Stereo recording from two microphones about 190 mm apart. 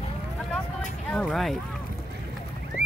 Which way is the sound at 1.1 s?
Centre (ahead or behind).